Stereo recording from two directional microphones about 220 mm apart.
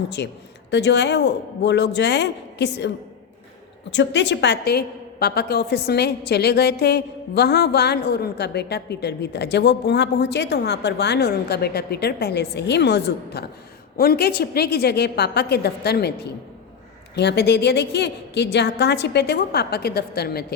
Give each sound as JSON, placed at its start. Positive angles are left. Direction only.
{"t": 0.2, "sound": "a woman's voice", "side_deg": 50}
{"t": 3.9, "sound": "a woman's voice", "side_deg": 55}
{"t": 17.2, "sound": "a woman's voice", "side_deg": 50}